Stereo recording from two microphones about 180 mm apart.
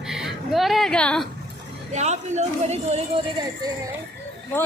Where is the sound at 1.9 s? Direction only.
40° right (ahead or behind).